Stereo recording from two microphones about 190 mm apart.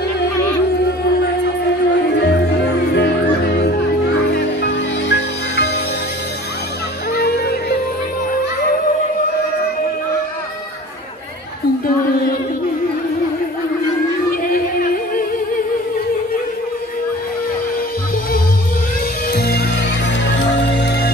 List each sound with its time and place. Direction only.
2.9 s music: 60° left (ahead or behind)
7.2 s music: 55° left (ahead or behind)
14.5 s music: 50° left (ahead or behind)
19.3 s music: 55° left (ahead or behind)
20.6 s music: 60° left (ahead or behind)